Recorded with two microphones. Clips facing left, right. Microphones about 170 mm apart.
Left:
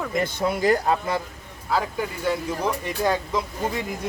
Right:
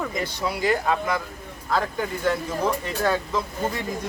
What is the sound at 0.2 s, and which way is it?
Speech, 50° left (ahead or behind).